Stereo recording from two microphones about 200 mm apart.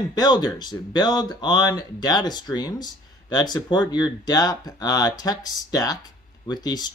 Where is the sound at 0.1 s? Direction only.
20° left (ahead or behind).